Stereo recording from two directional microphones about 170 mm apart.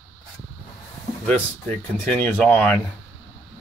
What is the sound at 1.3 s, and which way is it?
Speech, 10° left (ahead or behind).